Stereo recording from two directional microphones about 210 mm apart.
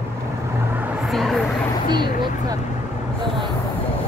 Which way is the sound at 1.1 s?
Centre (ahead or behind).